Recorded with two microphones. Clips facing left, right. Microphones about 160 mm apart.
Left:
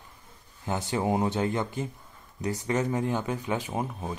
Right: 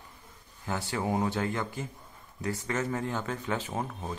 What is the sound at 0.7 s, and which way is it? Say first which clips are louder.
Speech: left 3 dB; 20° left (ahead or behind).